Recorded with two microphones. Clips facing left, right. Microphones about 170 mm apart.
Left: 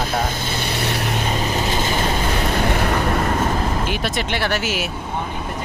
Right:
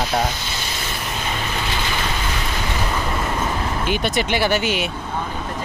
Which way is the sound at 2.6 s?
55° left (ahead or behind).